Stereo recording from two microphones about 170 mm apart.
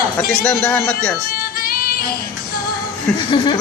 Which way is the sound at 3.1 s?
30° left (ahead or behind).